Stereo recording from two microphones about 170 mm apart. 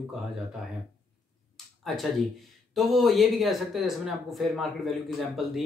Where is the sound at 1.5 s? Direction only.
Centre (ahead or behind).